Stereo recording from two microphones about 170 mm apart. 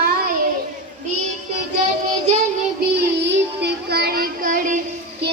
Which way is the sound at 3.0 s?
75° right (ahead or behind).